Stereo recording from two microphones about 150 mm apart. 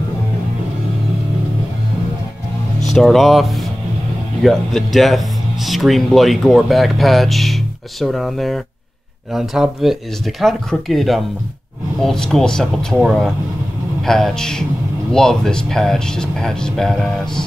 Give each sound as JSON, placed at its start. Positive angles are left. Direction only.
{"t": 3.0, "sound": "speech", "side_deg": 0}